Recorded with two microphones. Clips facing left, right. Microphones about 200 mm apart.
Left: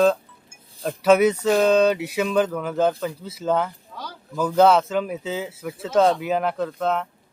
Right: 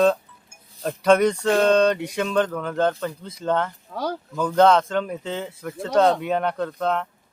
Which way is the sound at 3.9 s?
55° right (ahead or behind).